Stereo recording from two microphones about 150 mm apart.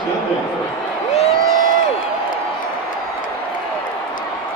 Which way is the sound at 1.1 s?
45° left (ahead or behind).